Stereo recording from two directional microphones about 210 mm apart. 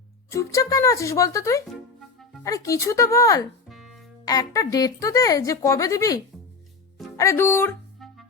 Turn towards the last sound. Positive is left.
turn(degrees=10)  # may be behind; listen again after turning